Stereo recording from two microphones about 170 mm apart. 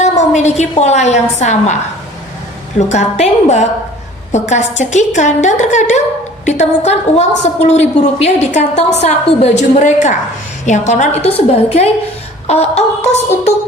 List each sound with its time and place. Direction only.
0.0 s a woman's voice: 45° left (ahead or behind)
2.7 s a woman's voice: 40° left (ahead or behind)